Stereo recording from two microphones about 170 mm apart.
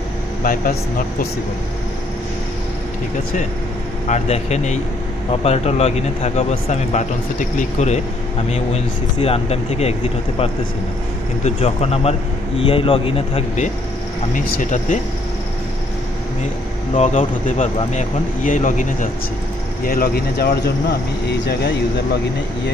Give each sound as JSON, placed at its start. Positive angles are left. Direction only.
{"t": 0.4, "sound": "speech", "side_deg": 55}
{"t": 4.1, "sound": "speech", "side_deg": 40}
{"t": 11.4, "sound": "speech", "side_deg": 40}
{"t": 14.3, "sound": "speech", "side_deg": 50}
{"t": 16.9, "sound": "speech", "side_deg": 40}
{"t": 19.8, "sound": "speech", "side_deg": 60}
{"t": 21.3, "sound": "speech", "side_deg": 75}